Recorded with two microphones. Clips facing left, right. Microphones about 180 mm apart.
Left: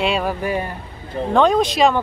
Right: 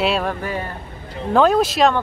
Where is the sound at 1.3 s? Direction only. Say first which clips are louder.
Right 1 dB; 5° right (ahead or behind).